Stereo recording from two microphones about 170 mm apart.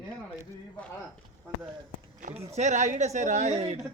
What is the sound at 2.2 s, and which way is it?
Speech, 35° right (ahead or behind).